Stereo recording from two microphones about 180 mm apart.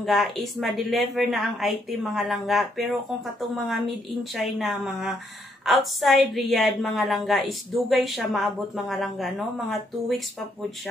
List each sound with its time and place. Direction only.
0.0 s a woman's voice: centre (ahead or behind)